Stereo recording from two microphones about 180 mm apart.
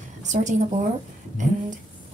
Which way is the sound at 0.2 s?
40° right (ahead or behind).